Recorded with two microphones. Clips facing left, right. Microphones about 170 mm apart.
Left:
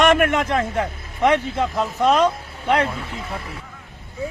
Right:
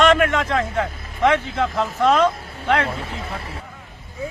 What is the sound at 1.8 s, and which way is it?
Speech, 10° left (ahead or behind).